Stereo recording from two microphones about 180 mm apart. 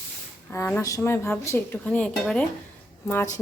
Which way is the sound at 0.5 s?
10° left (ahead or behind).